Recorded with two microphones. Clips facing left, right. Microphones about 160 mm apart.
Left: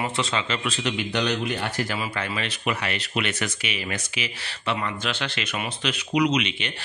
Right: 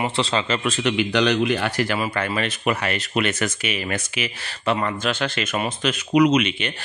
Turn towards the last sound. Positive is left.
turn(degrees=-50)  # may be behind; listen again after turning